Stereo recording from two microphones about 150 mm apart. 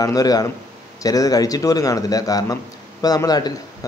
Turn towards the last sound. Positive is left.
turn(degrees=25)  # may be behind; listen again after turning